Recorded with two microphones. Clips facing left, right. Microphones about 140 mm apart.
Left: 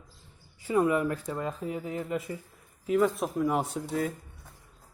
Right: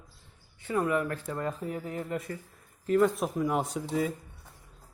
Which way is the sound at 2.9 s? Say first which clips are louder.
Right 1 dB; centre (ahead or behind).